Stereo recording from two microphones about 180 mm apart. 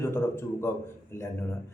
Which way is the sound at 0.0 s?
15° left (ahead or behind).